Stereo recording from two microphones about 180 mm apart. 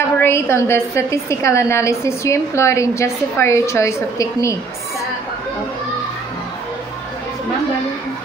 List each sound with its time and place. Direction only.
0.2 s a woman's voice: 15° left (ahead or behind)